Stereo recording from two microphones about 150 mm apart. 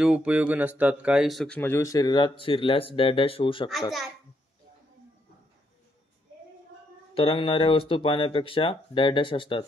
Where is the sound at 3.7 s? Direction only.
Centre (ahead or behind).